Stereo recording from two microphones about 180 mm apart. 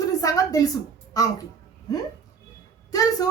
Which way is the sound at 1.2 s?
20° left (ahead or behind).